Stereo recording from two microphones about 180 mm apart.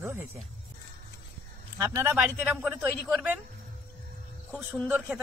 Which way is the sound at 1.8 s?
10° right (ahead or behind).